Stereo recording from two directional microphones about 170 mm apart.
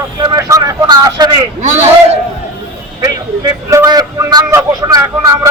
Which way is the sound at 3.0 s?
20° right (ahead or behind).